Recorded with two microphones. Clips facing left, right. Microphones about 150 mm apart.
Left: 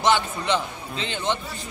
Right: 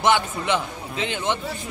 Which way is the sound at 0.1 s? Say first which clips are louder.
Right 1 dB; 10° right (ahead or behind).